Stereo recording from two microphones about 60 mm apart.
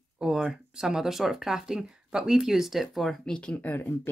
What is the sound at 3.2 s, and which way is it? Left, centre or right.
Speech, centre.